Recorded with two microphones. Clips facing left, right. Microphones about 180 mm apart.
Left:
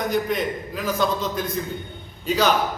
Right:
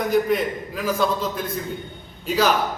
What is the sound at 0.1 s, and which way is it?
A man's voice, 5° right (ahead or behind).